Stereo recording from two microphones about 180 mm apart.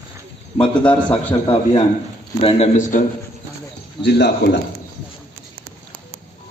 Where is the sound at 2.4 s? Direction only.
35° left (ahead or behind).